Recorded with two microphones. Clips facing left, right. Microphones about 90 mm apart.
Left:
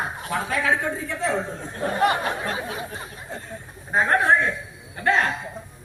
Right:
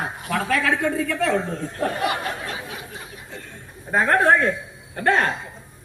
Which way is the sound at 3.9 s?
55° right (ahead or behind).